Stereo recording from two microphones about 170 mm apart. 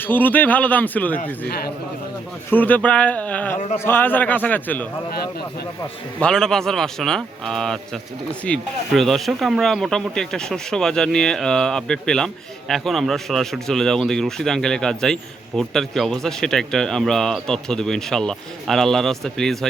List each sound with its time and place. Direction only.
0.0 s a man's voice: 10° left (ahead or behind)
1.5 s a man's voice: 70° left (ahead or behind)
2.5 s a man's voice: 10° left (ahead or behind)
6.1 s speech: 5° left (ahead or behind)